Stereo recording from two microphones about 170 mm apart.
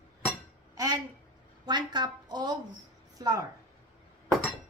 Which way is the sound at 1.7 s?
25° right (ahead or behind).